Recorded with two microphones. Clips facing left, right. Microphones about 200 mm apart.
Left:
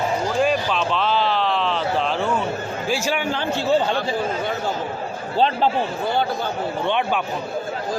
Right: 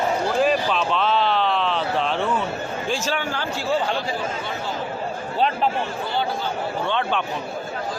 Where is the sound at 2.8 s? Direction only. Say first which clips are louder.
Left 3 dB; 10° left (ahead or behind).